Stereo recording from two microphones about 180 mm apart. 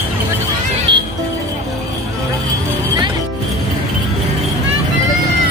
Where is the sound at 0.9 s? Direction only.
25° right (ahead or behind).